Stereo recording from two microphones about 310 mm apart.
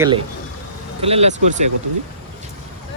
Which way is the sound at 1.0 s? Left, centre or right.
Centre.